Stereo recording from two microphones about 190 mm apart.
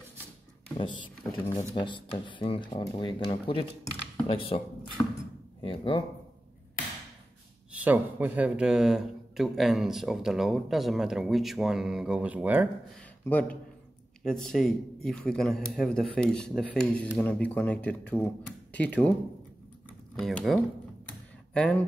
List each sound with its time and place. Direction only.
0.7 s speech: 25° left (ahead or behind)
1.2 s a man's voice: 5° left (ahead or behind)
1.6 s speech: 30° left (ahead or behind)
5.0 s a sound: 10° left (ahead or behind)
5.6 s speech: 25° left (ahead or behind)
7.7 s speech: 10° right (ahead or behind)
13.2 s a man's voice: 10° left (ahead or behind)
20.2 s speech: centre (ahead or behind)